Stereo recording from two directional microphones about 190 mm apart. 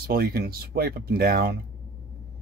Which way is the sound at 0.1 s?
55° right (ahead or behind).